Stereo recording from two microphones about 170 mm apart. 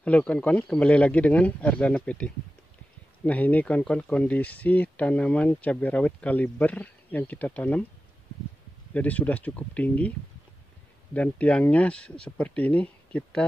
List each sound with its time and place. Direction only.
0.0 s speech: 10° left (ahead or behind)
8.9 s speech: 10° left (ahead or behind)
11.1 s speech: 5° left (ahead or behind)